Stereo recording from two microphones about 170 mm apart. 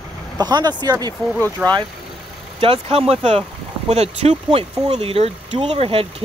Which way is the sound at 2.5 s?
35° right (ahead or behind).